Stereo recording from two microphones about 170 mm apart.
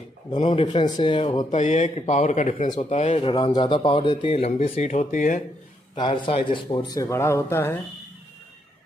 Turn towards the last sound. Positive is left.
turn(degrees=15)  # may be behind; listen again after turning